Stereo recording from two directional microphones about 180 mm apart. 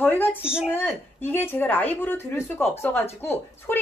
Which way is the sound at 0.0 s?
10° left (ahead or behind).